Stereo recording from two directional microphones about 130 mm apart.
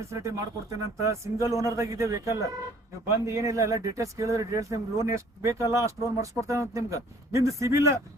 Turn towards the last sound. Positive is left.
turn(degrees=-25)  # may be behind; listen again after turning